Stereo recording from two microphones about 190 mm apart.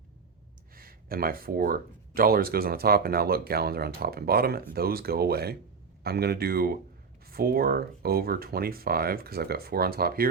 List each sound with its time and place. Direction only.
0.8 s speech: 50° right (ahead or behind)